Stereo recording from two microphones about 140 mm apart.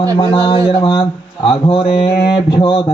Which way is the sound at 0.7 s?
40° left (ahead or behind).